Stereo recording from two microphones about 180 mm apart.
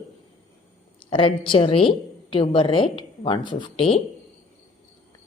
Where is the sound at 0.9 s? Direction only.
30° left (ahead or behind).